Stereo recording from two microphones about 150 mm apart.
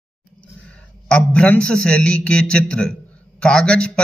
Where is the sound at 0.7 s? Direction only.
5° left (ahead or behind).